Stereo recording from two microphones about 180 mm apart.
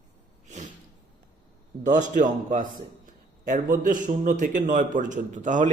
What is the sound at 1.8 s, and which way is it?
Speech, 45° right (ahead or behind).